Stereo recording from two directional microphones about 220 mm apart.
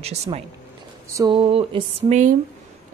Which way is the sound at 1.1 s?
15° right (ahead or behind).